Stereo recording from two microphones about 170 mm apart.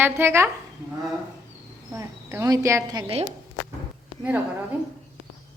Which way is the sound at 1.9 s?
15° right (ahead or behind).